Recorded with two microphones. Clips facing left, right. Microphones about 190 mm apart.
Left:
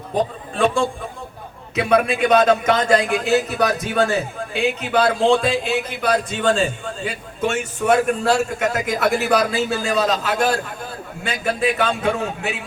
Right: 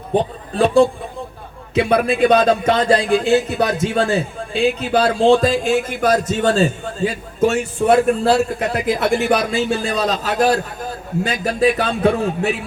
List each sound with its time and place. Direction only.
0.5 s a man's voice: 35° right (ahead or behind)